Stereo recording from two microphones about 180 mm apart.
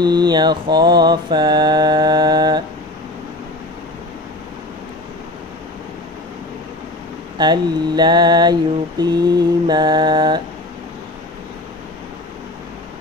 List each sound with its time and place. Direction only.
0.0 s mantra: 25° right (ahead or behind)
7.3 s mantra: 25° right (ahead or behind)